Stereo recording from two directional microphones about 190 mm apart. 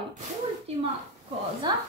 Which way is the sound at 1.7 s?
25° right (ahead or behind).